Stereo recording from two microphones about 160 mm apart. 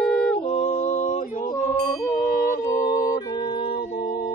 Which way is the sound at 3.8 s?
75° left (ahead or behind).